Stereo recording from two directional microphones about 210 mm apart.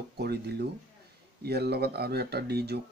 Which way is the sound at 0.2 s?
50° right (ahead or behind).